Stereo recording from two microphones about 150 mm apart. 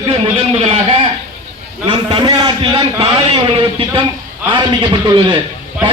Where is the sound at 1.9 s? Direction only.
30° right (ahead or behind).